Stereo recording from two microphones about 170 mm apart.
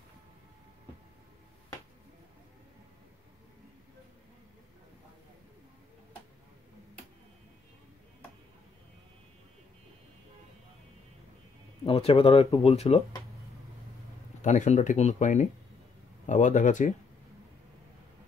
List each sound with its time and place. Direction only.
11.8 s speech: 35° left (ahead or behind)
14.4 s speech: 45° left (ahead or behind)